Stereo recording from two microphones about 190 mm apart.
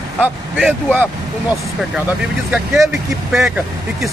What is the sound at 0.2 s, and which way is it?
Speech, centre (ahead or behind).